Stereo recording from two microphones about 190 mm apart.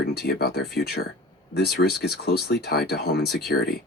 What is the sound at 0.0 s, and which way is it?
Speech, 55° left (ahead or behind).